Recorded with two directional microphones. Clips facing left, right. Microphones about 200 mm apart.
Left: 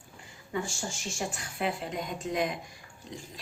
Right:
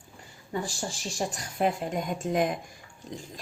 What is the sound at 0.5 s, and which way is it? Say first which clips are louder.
Speech: right 1 dB; 35° right (ahead or behind).